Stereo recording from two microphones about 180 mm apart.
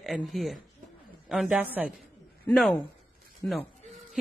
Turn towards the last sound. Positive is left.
turn(degrees=0)  # may be behind; listen again after turning